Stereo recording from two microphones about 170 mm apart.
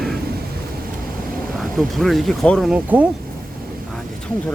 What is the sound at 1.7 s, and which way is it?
Speech, centre (ahead or behind).